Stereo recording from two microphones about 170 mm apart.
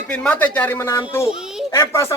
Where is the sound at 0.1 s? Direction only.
5° left (ahead or behind).